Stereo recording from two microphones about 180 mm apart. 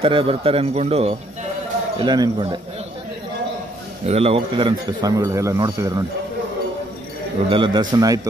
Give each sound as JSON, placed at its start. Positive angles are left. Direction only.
{"t": 0.0, "sound": "a man's voice", "side_deg": -30}
{"t": 2.0, "sound": "a man's voice", "side_deg": -25}
{"t": 4.0, "sound": "a man's voice", "side_deg": -35}
{"t": 7.4, "sound": "a man's voice", "side_deg": -25}